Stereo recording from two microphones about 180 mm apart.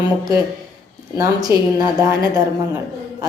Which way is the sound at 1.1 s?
20° right (ahead or behind).